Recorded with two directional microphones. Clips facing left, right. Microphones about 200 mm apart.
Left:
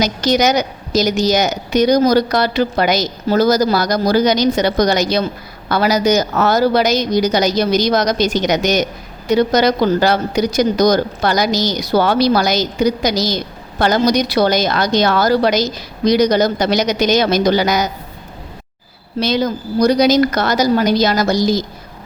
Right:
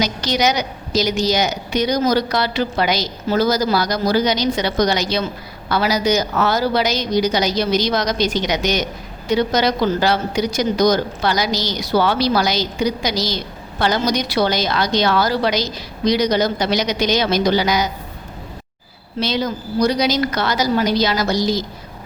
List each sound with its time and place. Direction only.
0.0 s a woman's voice: 45° left (ahead or behind)
19.2 s a woman's voice: 45° left (ahead or behind)